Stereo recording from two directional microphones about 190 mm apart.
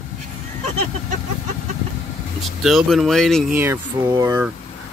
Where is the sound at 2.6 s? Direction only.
Centre (ahead or behind).